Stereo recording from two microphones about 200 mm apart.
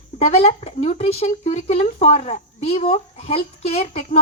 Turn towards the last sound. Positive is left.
turn(degrees=30)  # may be behind; listen again after turning